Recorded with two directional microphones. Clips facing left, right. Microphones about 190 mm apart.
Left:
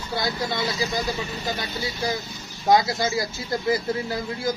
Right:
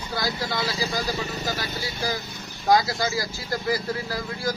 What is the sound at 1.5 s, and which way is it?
Speech, 25° left (ahead or behind).